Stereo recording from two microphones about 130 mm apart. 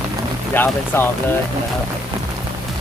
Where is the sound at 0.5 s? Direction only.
15° left (ahead or behind).